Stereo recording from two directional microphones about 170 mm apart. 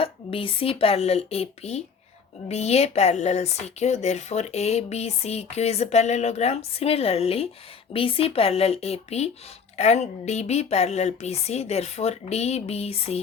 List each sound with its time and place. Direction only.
0.0 s speech: 30° left (ahead or behind)